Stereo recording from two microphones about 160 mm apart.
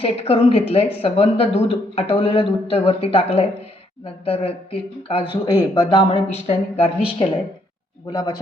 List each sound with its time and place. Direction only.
0.0 s speech: 35° left (ahead or behind)